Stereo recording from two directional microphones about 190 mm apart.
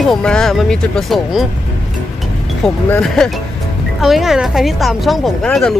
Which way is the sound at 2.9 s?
5° left (ahead or behind).